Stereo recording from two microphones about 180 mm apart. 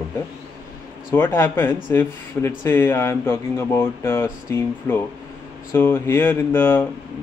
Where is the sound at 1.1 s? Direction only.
10° left (ahead or behind).